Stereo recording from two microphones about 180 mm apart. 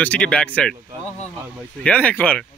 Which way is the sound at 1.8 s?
5° left (ahead or behind).